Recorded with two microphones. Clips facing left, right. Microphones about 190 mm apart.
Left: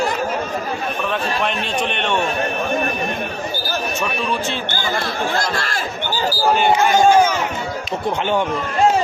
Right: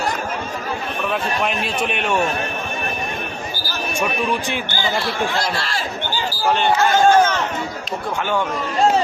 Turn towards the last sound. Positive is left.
turn(degrees=10)  # may be behind; listen again after turning